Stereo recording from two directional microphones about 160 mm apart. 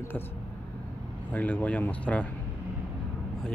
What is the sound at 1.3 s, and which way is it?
Speech, 10° left (ahead or behind).